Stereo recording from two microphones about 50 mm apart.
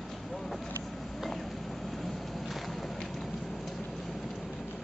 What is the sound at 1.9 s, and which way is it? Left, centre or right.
Vehicle, centre.